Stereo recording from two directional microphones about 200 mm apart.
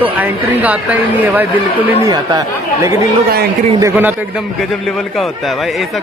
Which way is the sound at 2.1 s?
20° right (ahead or behind).